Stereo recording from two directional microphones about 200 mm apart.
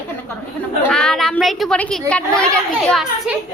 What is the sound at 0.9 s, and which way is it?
A woman's voice, 5° left (ahead or behind).